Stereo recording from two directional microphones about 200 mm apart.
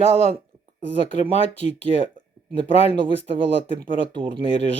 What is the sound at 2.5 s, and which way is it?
Speech, 25° right (ahead or behind).